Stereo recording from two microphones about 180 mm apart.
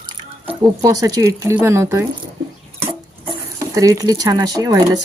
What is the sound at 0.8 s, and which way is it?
Speech, 20° right (ahead or behind).